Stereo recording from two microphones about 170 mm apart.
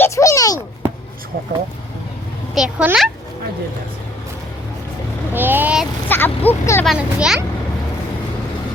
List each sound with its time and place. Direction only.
0.0 s a sound: 20° left (ahead or behind)
2.6 s a child's voice: 5° right (ahead or behind)
5.3 s vehicle: 10° right (ahead or behind)
6.1 s speech: 10° left (ahead or behind)
6.8 s a child's voice: 5° right (ahead or behind)